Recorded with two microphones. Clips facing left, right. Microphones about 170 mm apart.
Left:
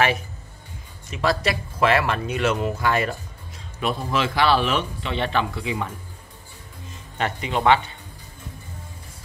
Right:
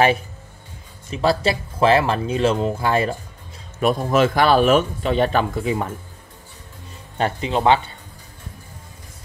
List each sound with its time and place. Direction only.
1.1 s speech: 30° right (ahead or behind)
3.8 s speech: 45° right (ahead or behind)
7.2 s speech: 30° right (ahead or behind)